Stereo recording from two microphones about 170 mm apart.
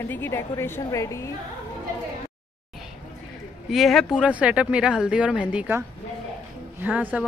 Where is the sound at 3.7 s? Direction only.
Centre (ahead or behind).